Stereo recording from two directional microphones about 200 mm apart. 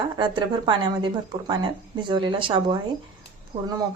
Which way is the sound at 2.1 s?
25° right (ahead or behind).